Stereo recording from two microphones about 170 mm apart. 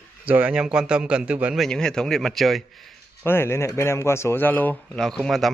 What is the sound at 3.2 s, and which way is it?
A man's voice, 15° left (ahead or behind).